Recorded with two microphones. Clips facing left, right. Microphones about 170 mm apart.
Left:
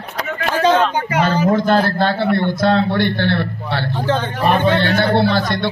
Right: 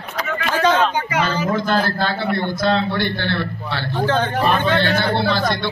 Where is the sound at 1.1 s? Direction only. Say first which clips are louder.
Left 5 dB; 45° left (ahead or behind).